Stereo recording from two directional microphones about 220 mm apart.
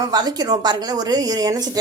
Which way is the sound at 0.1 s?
20° right (ahead or behind).